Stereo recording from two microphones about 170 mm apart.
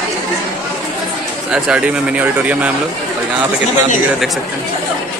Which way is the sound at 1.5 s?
5° right (ahead or behind).